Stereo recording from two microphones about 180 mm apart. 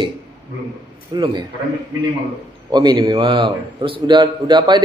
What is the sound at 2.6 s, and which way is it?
A man's voice, 25° right (ahead or behind).